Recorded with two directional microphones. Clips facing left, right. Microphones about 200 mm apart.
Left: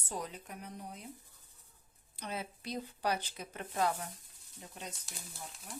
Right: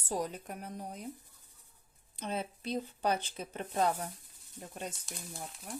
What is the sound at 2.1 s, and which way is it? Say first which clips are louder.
Speech: right 4 dB; 25° right (ahead or behind).